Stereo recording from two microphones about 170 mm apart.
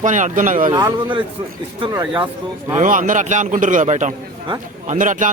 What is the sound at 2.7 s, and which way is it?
A man's voice, 50° right (ahead or behind).